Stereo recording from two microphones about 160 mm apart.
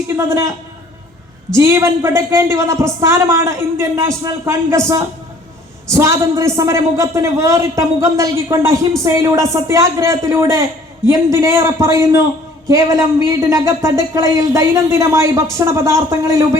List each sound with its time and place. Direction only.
0.2 s a woman's voice: 20° right (ahead or behind)
1.5 s a woman's voice: 15° right (ahead or behind)
5.9 s speech: 20° right (ahead or behind)